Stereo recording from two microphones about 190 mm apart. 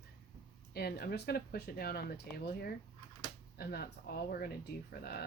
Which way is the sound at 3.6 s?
55° left (ahead or behind).